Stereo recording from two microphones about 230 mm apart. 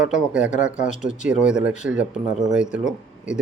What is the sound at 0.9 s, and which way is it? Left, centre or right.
Speech, left.